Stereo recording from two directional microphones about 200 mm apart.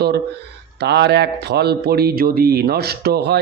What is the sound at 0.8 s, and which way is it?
Speech, 55° right (ahead or behind).